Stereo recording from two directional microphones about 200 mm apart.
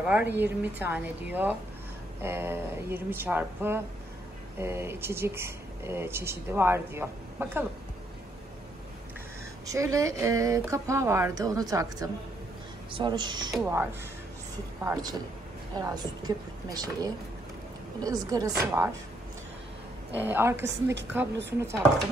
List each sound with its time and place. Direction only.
0.0 s speech: 5° right (ahead or behind)
0.3 s a woman's voice: 60° right (ahead or behind)
0.6 s speech: 10° right (ahead or behind)
9.7 s a woman's voice: 15° right (ahead or behind)
14.8 s a woman's voice: 15° right (ahead or behind)
20.2 s speech: 10° right (ahead or behind)